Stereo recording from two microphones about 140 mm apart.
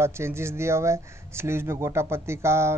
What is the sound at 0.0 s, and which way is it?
Speech, 20° right (ahead or behind).